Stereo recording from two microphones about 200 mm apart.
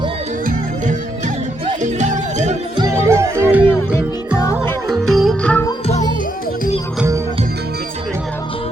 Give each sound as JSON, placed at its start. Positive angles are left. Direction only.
{"t": 1.6, "sound": "music", "side_deg": -35}
{"t": 2.7, "sound": "music", "side_deg": -15}
{"t": 4.9, "sound": "music", "side_deg": 0}